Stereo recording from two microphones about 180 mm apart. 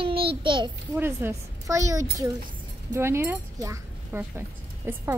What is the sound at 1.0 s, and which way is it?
A woman's voice, 15° right (ahead or behind).